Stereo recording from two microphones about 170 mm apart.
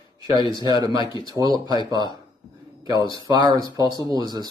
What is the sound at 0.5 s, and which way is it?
Speech, 25° right (ahead or behind).